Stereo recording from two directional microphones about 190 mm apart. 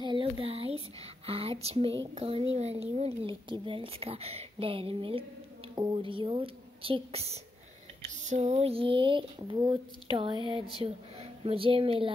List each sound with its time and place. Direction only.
0.0 s a woman's voice: 25° right (ahead or behind)